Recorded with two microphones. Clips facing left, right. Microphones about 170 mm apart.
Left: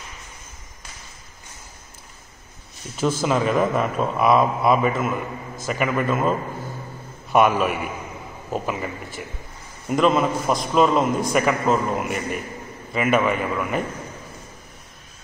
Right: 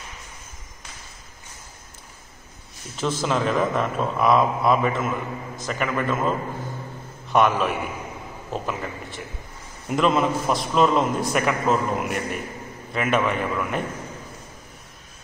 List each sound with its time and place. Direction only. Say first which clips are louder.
3.0 s a man's voice: left 3 dB; 5° left (ahead or behind)
7.3 s a man's voice: left 2 dB; 5° left (ahead or behind)